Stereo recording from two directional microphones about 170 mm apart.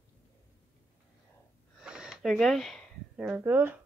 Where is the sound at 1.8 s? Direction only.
5° right (ahead or behind).